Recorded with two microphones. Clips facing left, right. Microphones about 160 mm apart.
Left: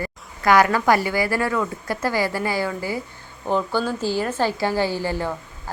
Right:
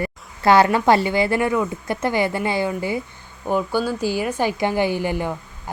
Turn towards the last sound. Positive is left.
turn(degrees=-15)  # may be behind; listen again after turning